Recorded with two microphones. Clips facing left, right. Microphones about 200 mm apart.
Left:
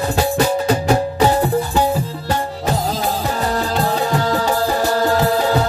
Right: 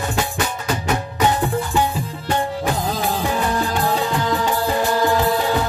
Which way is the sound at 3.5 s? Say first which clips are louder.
Left 1 dB; 40° left (ahead or behind).